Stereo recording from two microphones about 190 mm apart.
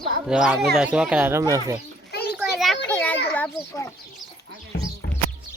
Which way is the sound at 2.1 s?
60° left (ahead or behind).